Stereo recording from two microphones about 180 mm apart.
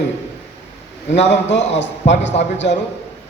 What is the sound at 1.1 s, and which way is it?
Speech, 40° left (ahead or behind).